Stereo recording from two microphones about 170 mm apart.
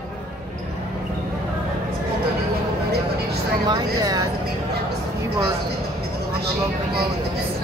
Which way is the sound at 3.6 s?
25° right (ahead or behind).